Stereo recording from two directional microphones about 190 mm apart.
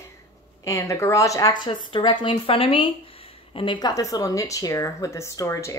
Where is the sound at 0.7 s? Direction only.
15° left (ahead or behind).